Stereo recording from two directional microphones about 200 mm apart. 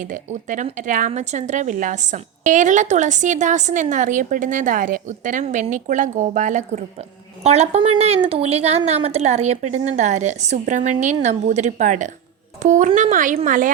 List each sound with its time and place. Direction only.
0.0 s a woman's voice: 40° right (ahead or behind)